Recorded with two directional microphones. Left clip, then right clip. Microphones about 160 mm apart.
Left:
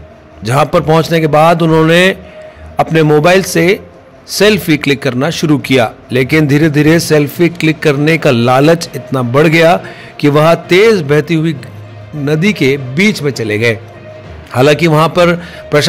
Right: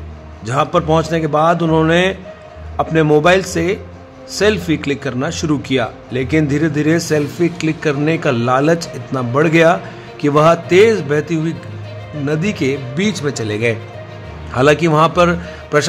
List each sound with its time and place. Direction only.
0.4 s a man's voice: 35° left (ahead or behind)